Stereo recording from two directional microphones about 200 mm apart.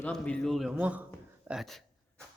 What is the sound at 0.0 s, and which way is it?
A man's voice, 5° left (ahead or behind).